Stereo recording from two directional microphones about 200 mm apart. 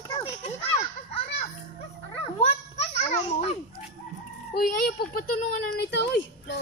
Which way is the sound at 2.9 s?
35° left (ahead or behind).